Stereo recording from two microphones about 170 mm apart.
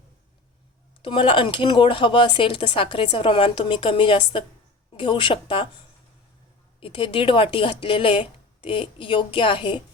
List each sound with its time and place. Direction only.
1.0 s speech: 30° left (ahead or behind)